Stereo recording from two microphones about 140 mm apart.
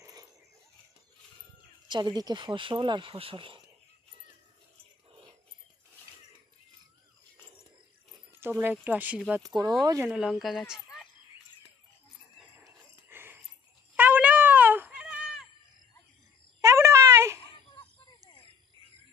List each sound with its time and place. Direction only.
0.0 s dog: 25° right (ahead or behind)
1.9 s speech: 30° right (ahead or behind)
8.4 s speech: 15° right (ahead or behind)
9.6 s speech: 30° right (ahead or behind)
10.0 s speech: 5° right (ahead or behind)
12.6 s a sound: 15° right (ahead or behind)
16.6 s a sound: 20° right (ahead or behind)